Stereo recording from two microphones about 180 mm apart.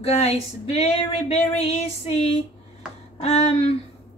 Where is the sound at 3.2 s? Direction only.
35° left (ahead or behind).